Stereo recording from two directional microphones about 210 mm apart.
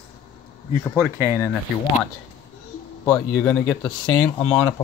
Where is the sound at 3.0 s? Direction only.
5° left (ahead or behind).